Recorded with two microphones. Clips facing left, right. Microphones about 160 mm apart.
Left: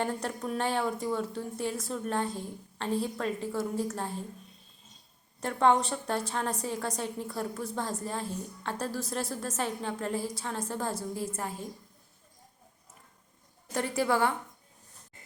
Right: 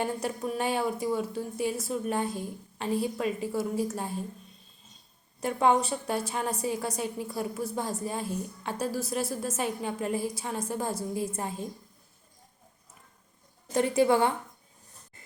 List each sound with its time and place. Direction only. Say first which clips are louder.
0.0 s a woman's voice: right 2 dB; 10° right (ahead or behind)
5.4 s a woman's voice: right 1 dB; 10° right (ahead or behind)
13.7 s a woman's voice: right 5 dB; 20° right (ahead or behind)